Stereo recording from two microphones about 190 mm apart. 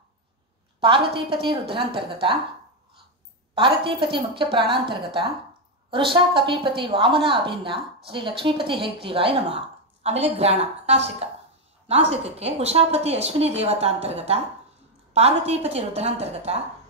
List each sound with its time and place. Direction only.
0.7 s a woman's voice: 25° right (ahead or behind)
3.5 s a woman's voice: 25° right (ahead or behind)